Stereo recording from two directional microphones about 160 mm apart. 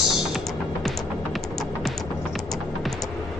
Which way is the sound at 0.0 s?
5° right (ahead or behind).